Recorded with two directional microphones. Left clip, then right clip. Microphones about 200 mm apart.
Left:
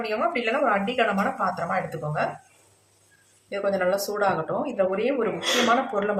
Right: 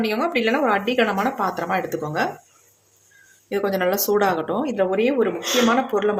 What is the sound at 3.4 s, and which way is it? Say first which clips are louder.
A woman's voice: right 3 dB; 55° right (ahead or behind).